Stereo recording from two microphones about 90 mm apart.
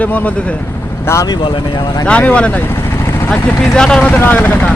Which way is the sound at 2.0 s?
15° left (ahead or behind).